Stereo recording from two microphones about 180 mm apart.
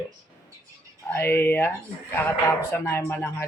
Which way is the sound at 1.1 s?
15° left (ahead or behind).